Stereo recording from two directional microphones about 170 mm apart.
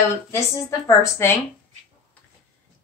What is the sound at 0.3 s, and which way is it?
A woman's voice, 15° left (ahead or behind).